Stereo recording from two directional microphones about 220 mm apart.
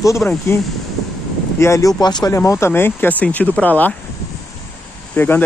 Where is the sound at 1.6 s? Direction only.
15° left (ahead or behind).